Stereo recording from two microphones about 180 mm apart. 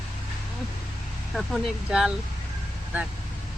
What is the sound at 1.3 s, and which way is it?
Speech, centre (ahead or behind).